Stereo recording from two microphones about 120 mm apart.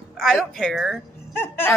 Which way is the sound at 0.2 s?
5° left (ahead or behind).